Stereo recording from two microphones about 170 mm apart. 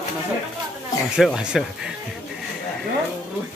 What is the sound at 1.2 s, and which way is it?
Speech, centre (ahead or behind).